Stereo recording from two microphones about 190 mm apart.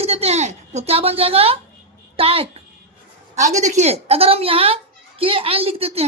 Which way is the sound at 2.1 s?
30° right (ahead or behind).